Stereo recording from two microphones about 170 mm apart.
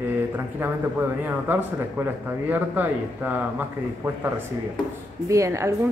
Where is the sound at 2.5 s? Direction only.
10° right (ahead or behind).